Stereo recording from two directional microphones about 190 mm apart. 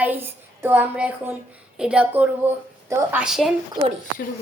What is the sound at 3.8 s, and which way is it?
Speech, 25° right (ahead or behind).